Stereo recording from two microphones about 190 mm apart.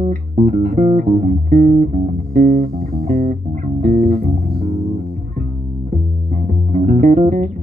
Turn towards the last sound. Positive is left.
turn(degrees=-40)  # may be behind; listen again after turning